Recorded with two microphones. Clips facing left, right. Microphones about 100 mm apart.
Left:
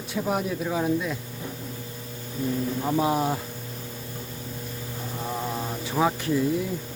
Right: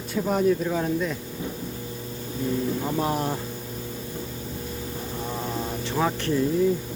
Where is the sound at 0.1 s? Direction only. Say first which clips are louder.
Right 5 dB; 5° left (ahead or behind).